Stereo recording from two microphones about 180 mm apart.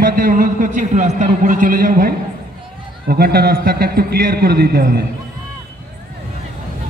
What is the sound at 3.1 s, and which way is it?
A man's voice, 60° right (ahead or behind).